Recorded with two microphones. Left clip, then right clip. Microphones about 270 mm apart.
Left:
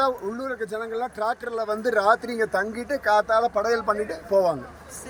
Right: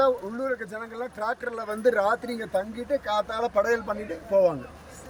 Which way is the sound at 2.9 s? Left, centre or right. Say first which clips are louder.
Left 7 dB; centre.